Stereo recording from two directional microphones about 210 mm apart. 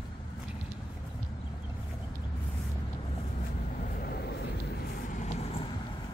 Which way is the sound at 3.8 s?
45° left (ahead or behind).